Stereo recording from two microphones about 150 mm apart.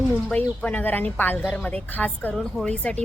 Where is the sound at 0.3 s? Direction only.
10° left (ahead or behind).